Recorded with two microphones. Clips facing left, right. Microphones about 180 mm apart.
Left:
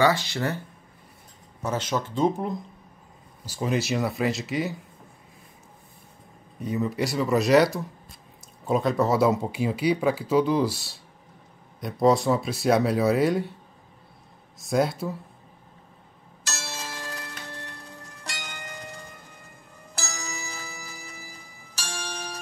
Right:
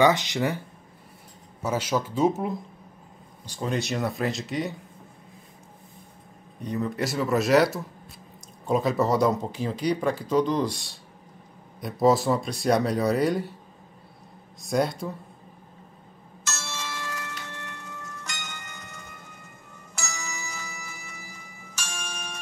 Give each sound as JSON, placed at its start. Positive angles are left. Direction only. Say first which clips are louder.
{"t": 0.0, "sound": "speech", "louder": "right 2 dB", "side_deg": -20}
{"t": 1.6, "sound": "speech", "louder": "right 1 dB", "side_deg": -10}
{"t": 3.4, "sound": "speech", "louder": "left 2 dB", "side_deg": 5}
{"t": 6.6, "sound": "speech", "louder": "left 2 dB", "side_deg": 5}
{"t": 14.6, "sound": "speech", "louder": "left 1 dB", "side_deg": 0}
{"t": 16.4, "sound": "tick-tock", "louder": "even", "side_deg": 35}
{"t": 20.0, "sound": "music", "louder": "left 1 dB", "side_deg": 35}